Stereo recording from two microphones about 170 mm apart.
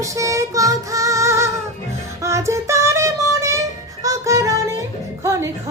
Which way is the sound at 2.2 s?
15° right (ahead or behind).